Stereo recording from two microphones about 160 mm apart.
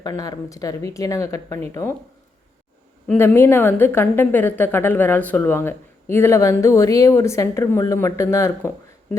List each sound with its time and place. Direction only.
0.0 s speech: 25° left (ahead or behind)
3.1 s a woman's voice: 15° left (ahead or behind)